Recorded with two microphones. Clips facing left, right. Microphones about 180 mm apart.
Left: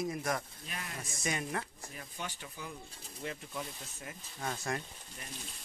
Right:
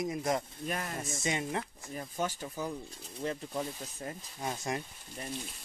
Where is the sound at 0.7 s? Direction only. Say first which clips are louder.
Right 8 dB; 45° right (ahead or behind).